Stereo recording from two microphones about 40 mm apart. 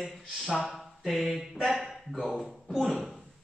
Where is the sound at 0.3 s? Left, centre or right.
Centre.